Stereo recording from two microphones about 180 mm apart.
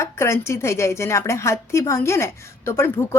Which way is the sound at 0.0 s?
15° left (ahead or behind).